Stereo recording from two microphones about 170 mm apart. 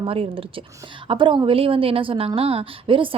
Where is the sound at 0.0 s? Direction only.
35° right (ahead or behind).